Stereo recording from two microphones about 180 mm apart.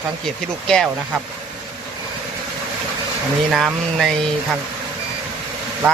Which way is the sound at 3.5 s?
Centre (ahead or behind).